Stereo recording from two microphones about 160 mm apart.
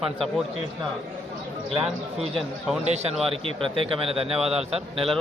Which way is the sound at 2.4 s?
Centre (ahead or behind).